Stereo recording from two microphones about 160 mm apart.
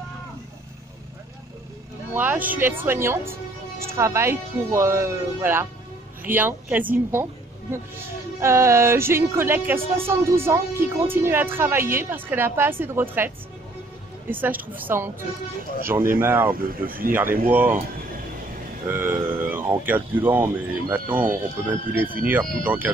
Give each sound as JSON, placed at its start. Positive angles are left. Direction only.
{"t": 2.1, "sound": "speech", "side_deg": -10}
{"t": 8.4, "sound": "speech", "side_deg": -15}
{"t": 14.3, "sound": "speech", "side_deg": -10}
{"t": 16.5, "sound": "speech", "side_deg": -65}
{"t": 17.5, "sound": "speech", "side_deg": -10}
{"t": 18.9, "sound": "speech", "side_deg": -15}